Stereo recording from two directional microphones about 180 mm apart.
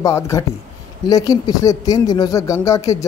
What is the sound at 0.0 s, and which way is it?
A man's voice, 15° left (ahead or behind).